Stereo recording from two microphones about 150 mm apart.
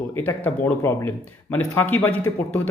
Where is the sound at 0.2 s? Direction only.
15° left (ahead or behind).